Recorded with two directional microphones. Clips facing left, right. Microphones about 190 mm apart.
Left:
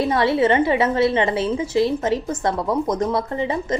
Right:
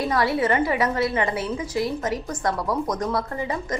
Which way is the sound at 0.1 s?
25° left (ahead or behind).